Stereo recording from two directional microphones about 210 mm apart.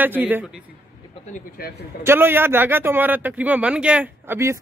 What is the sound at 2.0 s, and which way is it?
Speech, 10° right (ahead or behind).